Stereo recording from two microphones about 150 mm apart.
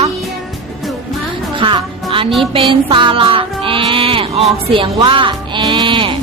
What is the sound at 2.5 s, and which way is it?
Music, 35° right (ahead or behind).